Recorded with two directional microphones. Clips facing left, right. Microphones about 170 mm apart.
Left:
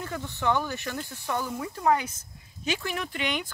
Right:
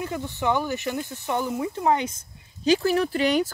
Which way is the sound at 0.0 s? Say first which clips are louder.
Right 3 dB; 15° right (ahead or behind).